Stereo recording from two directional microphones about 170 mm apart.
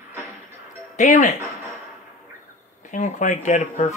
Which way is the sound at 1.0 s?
50° left (ahead or behind).